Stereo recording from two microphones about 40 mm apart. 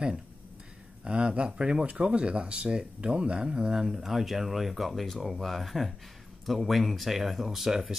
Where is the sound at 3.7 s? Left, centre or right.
Centre.